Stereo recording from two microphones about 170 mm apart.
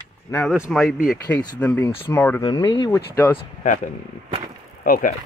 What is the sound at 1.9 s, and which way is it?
Speech, 30° left (ahead or behind).